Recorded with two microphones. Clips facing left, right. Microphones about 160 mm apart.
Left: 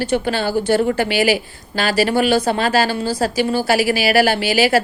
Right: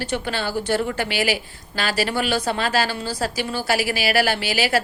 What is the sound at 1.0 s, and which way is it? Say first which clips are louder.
Speech: left 6 dB; 5° left (ahead or behind).